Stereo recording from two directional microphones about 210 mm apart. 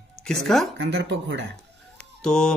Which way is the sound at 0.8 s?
55° right (ahead or behind).